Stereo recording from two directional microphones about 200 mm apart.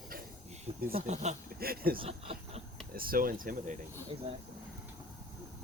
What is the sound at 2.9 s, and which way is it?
Speech, 45° right (ahead or behind).